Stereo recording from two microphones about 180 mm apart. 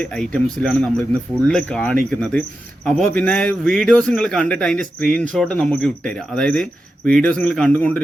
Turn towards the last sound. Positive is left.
turn(degrees=10)  # may be behind; listen again after turning